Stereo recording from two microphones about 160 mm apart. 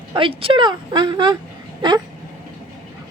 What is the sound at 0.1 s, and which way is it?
A woman's voice, 35° right (ahead or behind).